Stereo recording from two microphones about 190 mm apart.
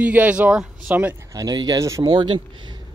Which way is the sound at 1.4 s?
20° right (ahead or behind).